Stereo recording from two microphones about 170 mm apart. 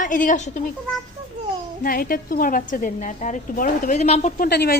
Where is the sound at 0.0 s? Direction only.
50° left (ahead or behind).